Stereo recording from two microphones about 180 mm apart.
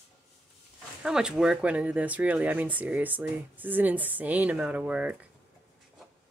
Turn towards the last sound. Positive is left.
turn(degrees=-10)  # may be behind; listen again after turning